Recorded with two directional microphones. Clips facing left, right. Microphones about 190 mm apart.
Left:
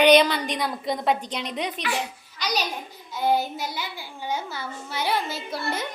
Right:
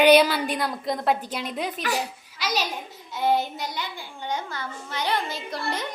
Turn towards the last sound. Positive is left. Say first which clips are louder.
# left 1 dB
turn(degrees=5)  # may be behind; listen again after turning